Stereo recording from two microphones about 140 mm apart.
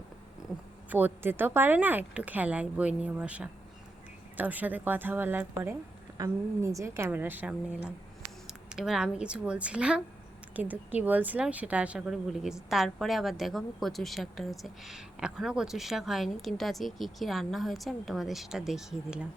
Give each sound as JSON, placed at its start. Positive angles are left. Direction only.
{"t": 0.9, "sound": "a woman's voice", "side_deg": -15}